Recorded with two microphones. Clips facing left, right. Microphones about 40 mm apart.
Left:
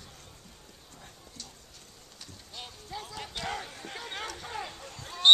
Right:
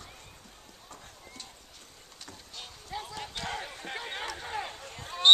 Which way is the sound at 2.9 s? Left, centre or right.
Centre.